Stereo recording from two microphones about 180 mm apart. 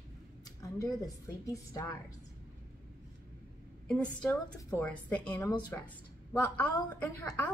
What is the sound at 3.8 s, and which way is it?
A woman's voice, 5° left (ahead or behind).